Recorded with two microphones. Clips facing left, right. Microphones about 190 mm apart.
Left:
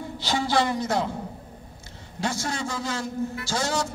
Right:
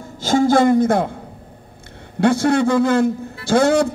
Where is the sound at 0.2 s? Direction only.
50° right (ahead or behind).